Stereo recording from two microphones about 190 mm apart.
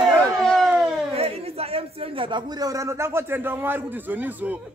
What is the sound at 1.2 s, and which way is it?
A man's voice, 30° right (ahead or behind).